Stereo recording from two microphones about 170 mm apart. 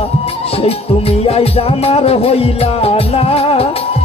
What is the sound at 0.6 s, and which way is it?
Music, 35° left (ahead or behind).